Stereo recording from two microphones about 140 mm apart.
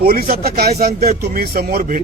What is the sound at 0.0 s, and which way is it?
A man's voice, 90° right.